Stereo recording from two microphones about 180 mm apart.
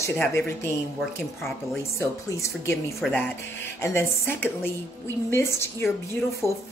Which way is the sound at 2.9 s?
Centre (ahead or behind).